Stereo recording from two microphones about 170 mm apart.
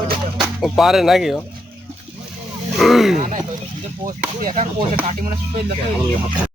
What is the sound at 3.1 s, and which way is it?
Speech, 50° right (ahead or behind).